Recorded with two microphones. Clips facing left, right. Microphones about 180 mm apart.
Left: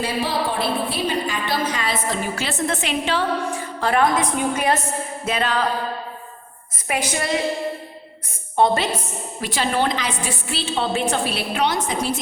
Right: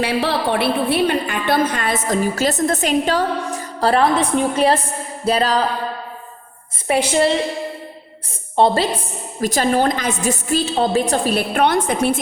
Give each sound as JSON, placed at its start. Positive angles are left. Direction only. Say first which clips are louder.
{"t": 0.0, "sound": "a woman's voice", "louder": "right 4 dB", "side_deg": -70}
{"t": 6.8, "sound": "a woman's voice", "louder": "right 8 dB", "side_deg": -30}
{"t": 8.5, "sound": "a woman's voice", "louder": "right 3 dB", "side_deg": -30}
{"t": 9.4, "sound": "a woman's voice", "louder": "right 5 dB", "side_deg": -45}